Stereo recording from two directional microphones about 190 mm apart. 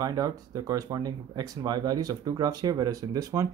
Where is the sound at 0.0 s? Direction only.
20° right (ahead or behind).